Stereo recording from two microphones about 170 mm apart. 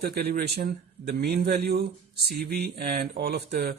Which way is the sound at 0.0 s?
60° right (ahead or behind).